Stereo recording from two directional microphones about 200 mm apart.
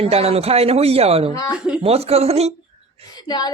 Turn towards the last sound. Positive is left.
turn(degrees=20)  # may be behind; listen again after turning